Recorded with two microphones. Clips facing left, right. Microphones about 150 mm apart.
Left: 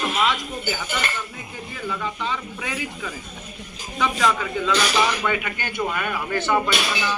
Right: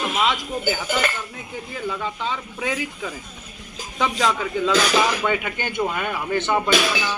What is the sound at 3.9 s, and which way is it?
Speech, 25° right (ahead or behind).